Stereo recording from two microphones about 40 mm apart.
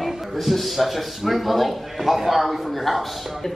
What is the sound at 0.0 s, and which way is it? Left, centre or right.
Speech, centre.